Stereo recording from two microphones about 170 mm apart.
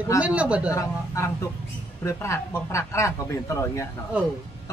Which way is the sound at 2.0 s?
15° left (ahead or behind).